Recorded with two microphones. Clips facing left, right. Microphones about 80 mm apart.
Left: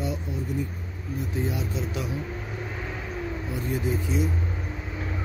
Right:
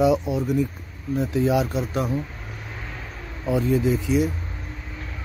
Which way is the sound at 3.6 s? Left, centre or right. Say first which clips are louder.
Right 6 dB; right.